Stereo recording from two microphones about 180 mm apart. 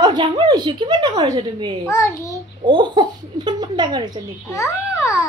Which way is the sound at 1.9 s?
15° left (ahead or behind).